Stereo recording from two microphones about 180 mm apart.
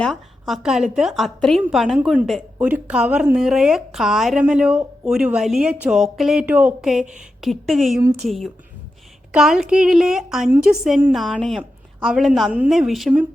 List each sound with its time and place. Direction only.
0.0 s a woman's voice: centre (ahead or behind)